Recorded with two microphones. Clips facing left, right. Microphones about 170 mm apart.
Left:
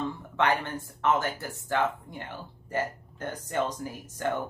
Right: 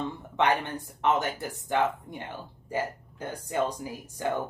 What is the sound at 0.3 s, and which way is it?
A woman's voice, 15° right (ahead or behind).